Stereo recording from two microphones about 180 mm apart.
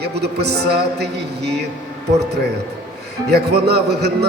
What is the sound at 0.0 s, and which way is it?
Speech, 65° right (ahead or behind).